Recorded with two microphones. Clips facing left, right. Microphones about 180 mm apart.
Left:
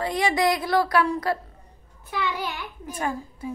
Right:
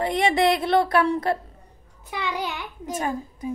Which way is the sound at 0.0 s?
25° right (ahead or behind).